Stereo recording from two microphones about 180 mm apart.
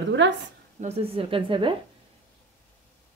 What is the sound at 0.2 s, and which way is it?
Speech, 90° right.